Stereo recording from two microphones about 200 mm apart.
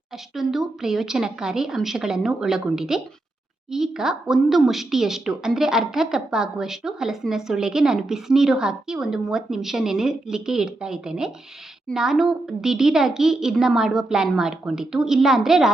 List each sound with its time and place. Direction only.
0.3 s speech: centre (ahead or behind)